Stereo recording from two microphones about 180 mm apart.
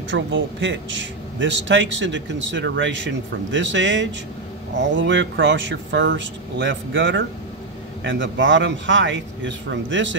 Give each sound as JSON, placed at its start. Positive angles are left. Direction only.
{"t": 0.1, "sound": "a man's voice", "side_deg": -90}